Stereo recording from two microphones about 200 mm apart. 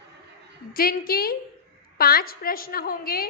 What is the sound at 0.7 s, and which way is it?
A woman's voice, 45° left (ahead or behind).